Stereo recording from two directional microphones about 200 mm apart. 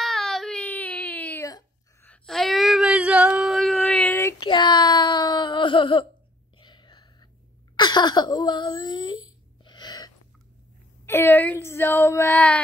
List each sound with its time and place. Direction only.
0.0 s a sound: centre (ahead or behind)
2.0 s female singing: centre (ahead or behind); by 6.0 s 25° left (ahead or behind)
6.6 s whispering: 25° left (ahead or behind)
7.7 s speech: 20° left (ahead or behind)
9.7 s gasp: 20° left (ahead or behind)
11.1 s speech: 10° left (ahead or behind)